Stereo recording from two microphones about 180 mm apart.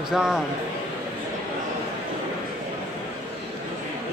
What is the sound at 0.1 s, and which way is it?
Speech, centre (ahead or behind).